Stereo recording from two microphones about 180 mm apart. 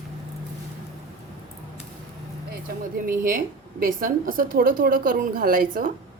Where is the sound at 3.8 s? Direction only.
50° right (ahead or behind).